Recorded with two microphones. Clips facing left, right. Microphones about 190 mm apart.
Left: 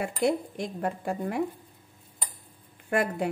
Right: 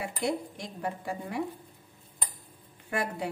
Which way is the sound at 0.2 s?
55° left (ahead or behind).